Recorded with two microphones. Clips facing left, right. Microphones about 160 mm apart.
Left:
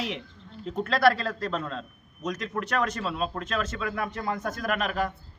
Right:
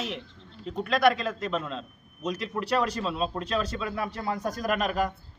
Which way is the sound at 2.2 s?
30° right (ahead or behind).